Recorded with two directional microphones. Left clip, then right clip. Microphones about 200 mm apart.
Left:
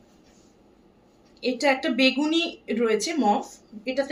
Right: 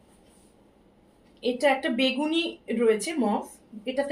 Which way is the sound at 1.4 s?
20° left (ahead or behind).